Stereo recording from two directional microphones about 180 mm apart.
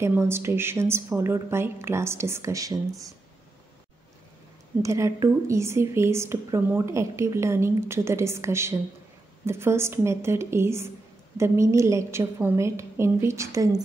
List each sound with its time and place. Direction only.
0.0 s a woman's voice: 15° right (ahead or behind)
4.8 s a woman's voice: 15° right (ahead or behind)